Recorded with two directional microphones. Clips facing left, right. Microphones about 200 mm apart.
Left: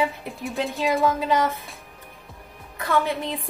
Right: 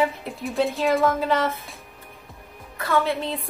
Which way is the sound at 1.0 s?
15° left (ahead or behind).